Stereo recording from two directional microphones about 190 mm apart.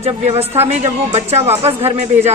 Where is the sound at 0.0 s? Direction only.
35° right (ahead or behind).